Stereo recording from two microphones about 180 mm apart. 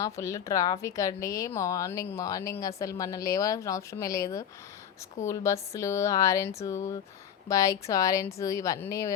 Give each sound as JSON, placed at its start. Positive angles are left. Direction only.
{"t": 0.0, "sound": "speech", "side_deg": 15}